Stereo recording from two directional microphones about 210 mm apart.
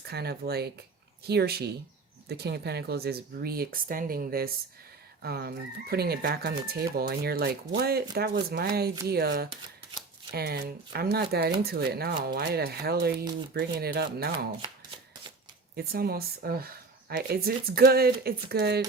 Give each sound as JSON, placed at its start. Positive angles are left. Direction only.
{"t": 0.0, "sound": "speech", "side_deg": -50}
{"t": 14.3, "sound": "shuffling cards", "side_deg": -25}
{"t": 15.7, "sound": "speech", "side_deg": -45}